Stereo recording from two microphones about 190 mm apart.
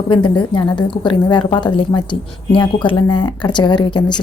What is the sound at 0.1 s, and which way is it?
Speech, 25° left (ahead or behind).